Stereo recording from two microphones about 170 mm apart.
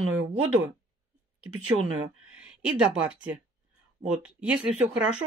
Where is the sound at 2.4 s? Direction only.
5° right (ahead or behind).